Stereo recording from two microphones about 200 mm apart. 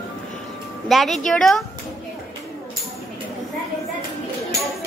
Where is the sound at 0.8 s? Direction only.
Centre (ahead or behind).